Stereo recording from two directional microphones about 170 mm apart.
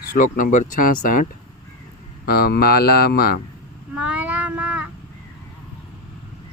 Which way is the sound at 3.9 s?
5° right (ahead or behind).